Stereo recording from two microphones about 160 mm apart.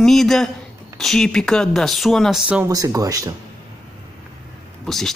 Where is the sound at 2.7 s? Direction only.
20° right (ahead or behind).